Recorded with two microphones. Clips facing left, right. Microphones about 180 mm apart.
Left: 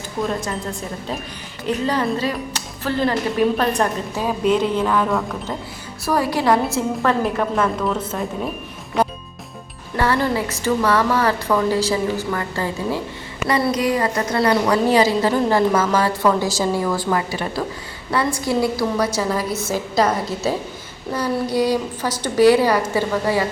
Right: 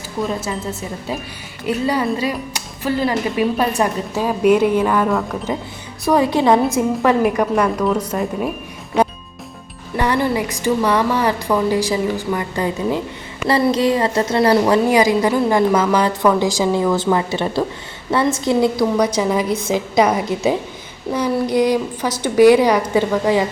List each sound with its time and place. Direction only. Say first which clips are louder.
0.2 s speech: right 1 dB; 5° right (ahead or behind)
6.1 s a woman's voice: right 4 dB; 20° right (ahead or behind)
10.0 s a woman's voice: right 1 dB; 15° right (ahead or behind)
14.8 s a woman's voice: right 2 dB; 15° right (ahead or behind)